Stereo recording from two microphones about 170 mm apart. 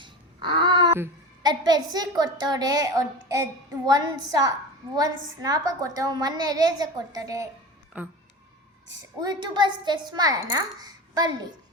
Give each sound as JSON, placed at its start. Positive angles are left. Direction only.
{"t": 0.0, "sound": "a sound", "side_deg": -25}
{"t": 0.9, "sound": "a woman's voice", "side_deg": -20}
{"t": 7.9, "sound": "speech", "side_deg": -10}
{"t": 9.2, "sound": "a woman's voice", "side_deg": -25}